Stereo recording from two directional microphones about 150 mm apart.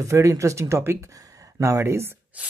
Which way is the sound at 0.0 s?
20° right (ahead or behind).